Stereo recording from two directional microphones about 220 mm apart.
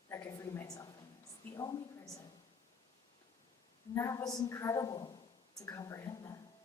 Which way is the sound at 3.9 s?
15° left (ahead or behind).